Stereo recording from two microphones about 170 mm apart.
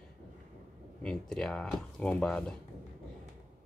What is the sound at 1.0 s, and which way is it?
Speech, 5° left (ahead or behind).